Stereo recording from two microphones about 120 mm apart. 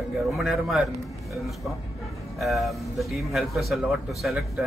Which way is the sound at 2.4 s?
Centre (ahead or behind).